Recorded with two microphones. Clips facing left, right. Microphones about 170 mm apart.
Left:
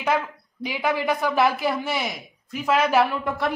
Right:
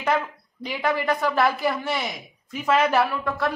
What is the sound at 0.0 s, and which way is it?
A woman's voice, 10° left (ahead or behind).